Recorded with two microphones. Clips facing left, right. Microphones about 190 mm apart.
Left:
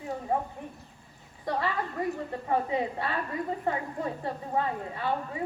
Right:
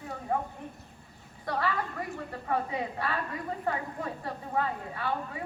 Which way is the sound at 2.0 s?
20° left (ahead or behind).